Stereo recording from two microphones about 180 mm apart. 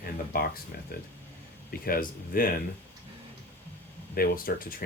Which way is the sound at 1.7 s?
55° left (ahead or behind).